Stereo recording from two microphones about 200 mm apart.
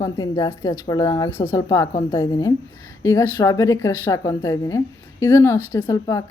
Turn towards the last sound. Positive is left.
turn(degrees=15)  # may be behind; listen again after turning